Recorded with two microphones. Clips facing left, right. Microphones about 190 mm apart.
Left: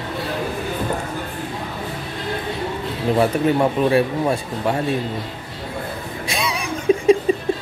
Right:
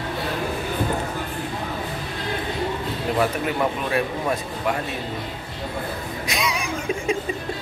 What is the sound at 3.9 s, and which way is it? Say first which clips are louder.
Speech: left 5 dB; 30° left (ahead or behind).